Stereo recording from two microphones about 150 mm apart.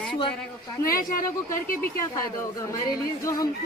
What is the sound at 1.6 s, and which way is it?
Speech, 70° left (ahead or behind).